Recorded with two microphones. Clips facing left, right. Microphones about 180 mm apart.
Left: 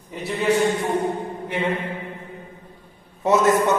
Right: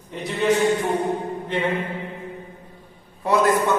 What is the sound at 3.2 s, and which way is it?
Speech, 20° left (ahead or behind).